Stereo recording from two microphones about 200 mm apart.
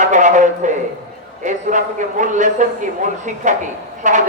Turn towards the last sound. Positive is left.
turn(degrees=-40)  # may be behind; listen again after turning